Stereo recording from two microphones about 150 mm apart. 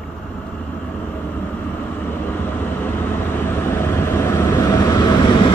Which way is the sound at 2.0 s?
15° left (ahead or behind).